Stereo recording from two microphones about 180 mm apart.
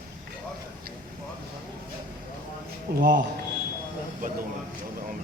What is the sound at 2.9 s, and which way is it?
Speech, 55° right (ahead or behind).